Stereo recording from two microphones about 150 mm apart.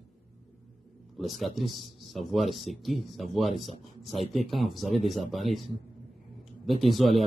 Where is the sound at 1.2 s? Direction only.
Centre (ahead or behind).